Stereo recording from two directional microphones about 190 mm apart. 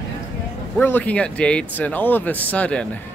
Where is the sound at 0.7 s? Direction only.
10° left (ahead or behind).